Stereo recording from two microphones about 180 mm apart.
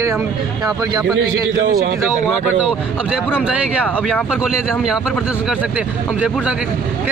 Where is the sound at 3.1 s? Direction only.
5° right (ahead or behind).